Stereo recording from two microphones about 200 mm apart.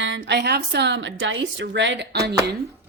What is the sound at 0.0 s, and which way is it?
Speech, 65° right (ahead or behind).